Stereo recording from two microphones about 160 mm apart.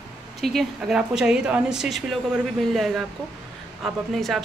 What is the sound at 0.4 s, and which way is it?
Speech, centre (ahead or behind).